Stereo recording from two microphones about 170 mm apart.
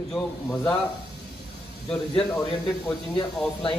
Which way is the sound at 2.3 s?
15° left (ahead or behind).